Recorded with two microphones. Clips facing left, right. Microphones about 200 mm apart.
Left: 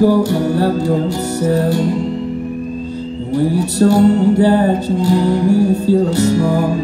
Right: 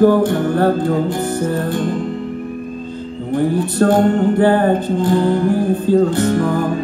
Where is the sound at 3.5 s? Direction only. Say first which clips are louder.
Left 2 dB; 55° right (ahead or behind).